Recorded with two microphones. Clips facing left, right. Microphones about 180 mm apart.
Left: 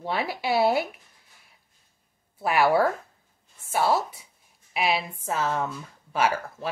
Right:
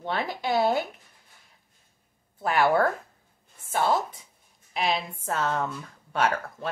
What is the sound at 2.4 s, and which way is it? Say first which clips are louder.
Speech: left 1 dB; 10° left (ahead or behind).